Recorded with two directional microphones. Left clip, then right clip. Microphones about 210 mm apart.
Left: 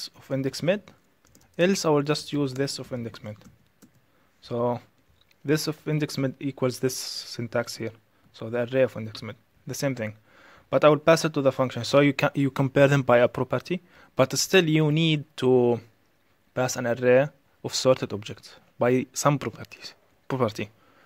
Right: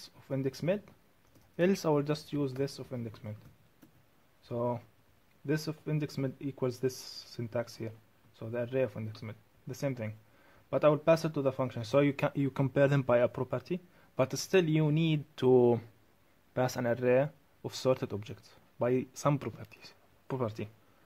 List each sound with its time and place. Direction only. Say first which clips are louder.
0.0 s speech: left 7 dB; 20° left (ahead or behind)
4.4 s speech: left 8 dB; 25° left (ahead or behind)